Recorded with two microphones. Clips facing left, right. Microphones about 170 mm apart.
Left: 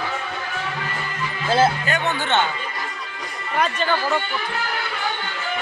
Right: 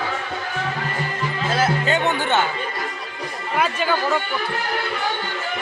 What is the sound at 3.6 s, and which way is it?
Speech, 5° right (ahead or behind).